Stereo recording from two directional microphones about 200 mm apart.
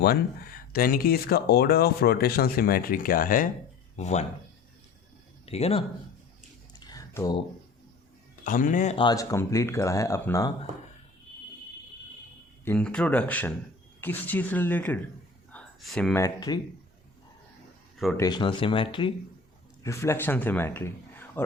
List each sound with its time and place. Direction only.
0.7 s speech: 45° left (ahead or behind)
5.5 s speech: 30° left (ahead or behind)
6.7 s a sound: 20° left (ahead or behind)
8.4 s speech: 40° left (ahead or behind)
9.0 s speech: 15° left (ahead or behind)
12.6 s speech: 5° left (ahead or behind)
15.5 s a sound: 5° left (ahead or behind)
16.1 s speech: 15° left (ahead or behind)
17.9 s a sound: centre (ahead or behind)
18.2 s speech: 20° left (ahead or behind)
19.8 s a man's voice: 15° left (ahead or behind)